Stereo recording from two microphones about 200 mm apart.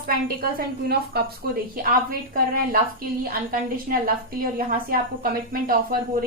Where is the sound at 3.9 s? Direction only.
45° right (ahead or behind).